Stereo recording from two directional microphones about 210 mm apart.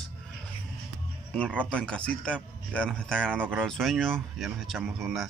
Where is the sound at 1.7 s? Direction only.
5° left (ahead or behind).